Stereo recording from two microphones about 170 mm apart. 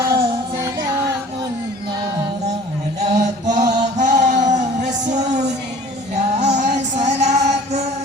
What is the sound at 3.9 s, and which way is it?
Music, 45° right (ahead or behind).